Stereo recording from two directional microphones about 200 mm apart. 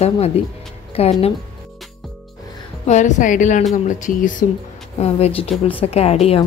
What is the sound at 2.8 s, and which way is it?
A woman's voice, 35° left (ahead or behind).